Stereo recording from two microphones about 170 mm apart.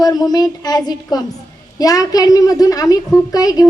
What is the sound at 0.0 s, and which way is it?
Speech, 25° left (ahead or behind).